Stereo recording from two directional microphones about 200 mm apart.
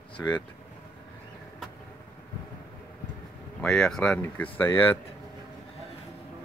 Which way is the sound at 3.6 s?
5° left (ahead or behind).